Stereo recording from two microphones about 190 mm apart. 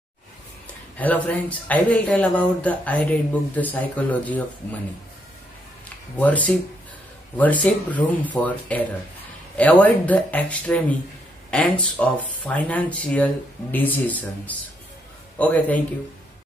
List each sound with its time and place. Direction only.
0.9 s speech: 10° left (ahead or behind)
6.1 s speech: 10° left (ahead or behind)